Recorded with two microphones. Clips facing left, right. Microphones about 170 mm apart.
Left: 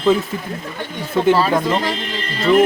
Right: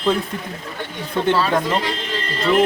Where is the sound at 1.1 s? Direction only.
5° left (ahead or behind).